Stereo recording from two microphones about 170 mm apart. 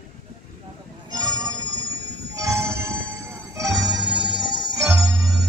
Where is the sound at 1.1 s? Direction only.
25° right (ahead or behind).